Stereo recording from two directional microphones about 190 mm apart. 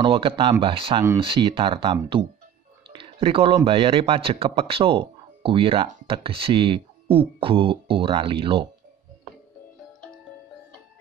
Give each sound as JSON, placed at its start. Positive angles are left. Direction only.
{"t": 0.0, "sound": "a man's voice", "side_deg": -25}